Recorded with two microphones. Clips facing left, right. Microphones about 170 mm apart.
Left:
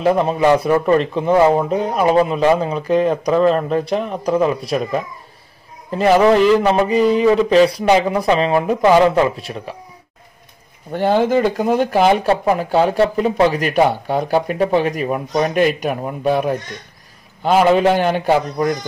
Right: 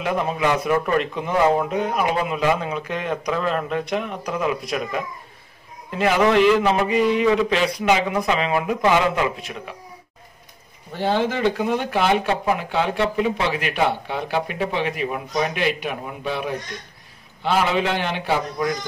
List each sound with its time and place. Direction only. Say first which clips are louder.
0.0 s a man's voice: left 7 dB; 35° left (ahead or behind)
10.9 s speech: left 6 dB; 50° left (ahead or behind)